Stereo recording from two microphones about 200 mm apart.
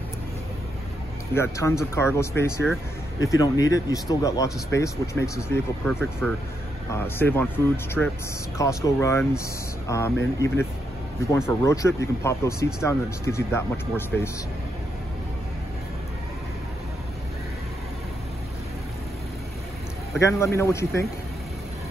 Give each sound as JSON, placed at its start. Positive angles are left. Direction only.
{"t": 1.3, "sound": "speech", "side_deg": 10}
{"t": 20.2, "sound": "speech", "side_deg": 15}